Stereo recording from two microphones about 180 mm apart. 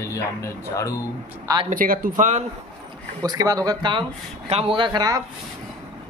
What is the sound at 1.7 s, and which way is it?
Speech, 50° right (ahead or behind).